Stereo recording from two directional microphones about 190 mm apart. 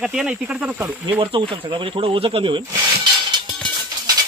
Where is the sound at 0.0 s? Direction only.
5° right (ahead or behind).